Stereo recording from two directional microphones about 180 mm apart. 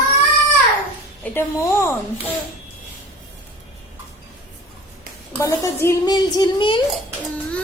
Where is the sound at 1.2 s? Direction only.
10° left (ahead or behind).